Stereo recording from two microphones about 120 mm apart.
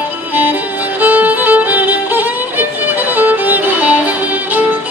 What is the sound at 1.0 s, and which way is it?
Violin, 15° right (ahead or behind).